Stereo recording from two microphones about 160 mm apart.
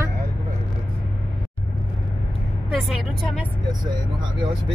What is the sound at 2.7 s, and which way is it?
Speech, centre (ahead or behind).